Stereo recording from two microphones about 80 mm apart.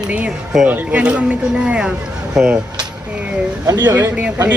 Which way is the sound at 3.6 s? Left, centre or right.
Right.